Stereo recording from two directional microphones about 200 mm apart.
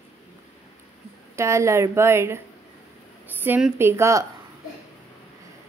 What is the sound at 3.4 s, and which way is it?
Speech, 10° right (ahead or behind).